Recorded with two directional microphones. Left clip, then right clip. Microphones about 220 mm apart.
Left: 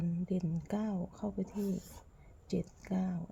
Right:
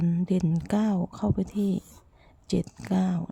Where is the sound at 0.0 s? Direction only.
30° right (ahead or behind).